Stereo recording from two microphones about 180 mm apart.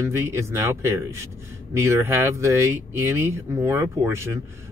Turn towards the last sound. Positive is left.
turn(degrees=-15)  # may be behind; listen again after turning